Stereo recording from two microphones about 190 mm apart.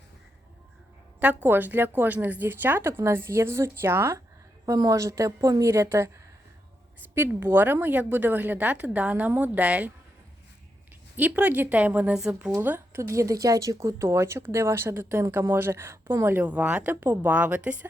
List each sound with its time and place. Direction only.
1.5 s a woman's voice: 10° right (ahead or behind)
7.1 s a woman's voice: 10° right (ahead or behind)
11.2 s a woman's voice: 10° right (ahead or behind)